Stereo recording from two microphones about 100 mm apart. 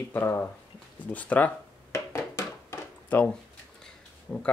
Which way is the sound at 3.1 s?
15° left (ahead or behind).